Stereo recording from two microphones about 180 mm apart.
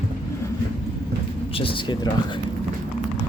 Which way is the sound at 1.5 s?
30° left (ahead or behind).